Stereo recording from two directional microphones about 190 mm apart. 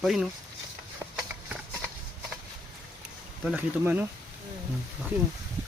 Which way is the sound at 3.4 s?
10° right (ahead or behind).